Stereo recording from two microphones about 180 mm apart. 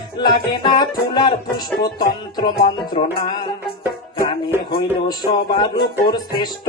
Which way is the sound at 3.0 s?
30° left (ahead or behind).